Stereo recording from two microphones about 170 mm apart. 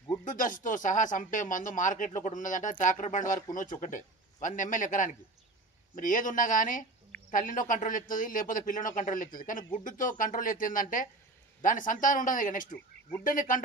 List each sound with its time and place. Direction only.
0.2 s speech: 50° left (ahead or behind)